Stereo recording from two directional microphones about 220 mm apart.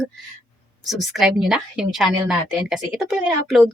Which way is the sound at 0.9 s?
Centre (ahead or behind).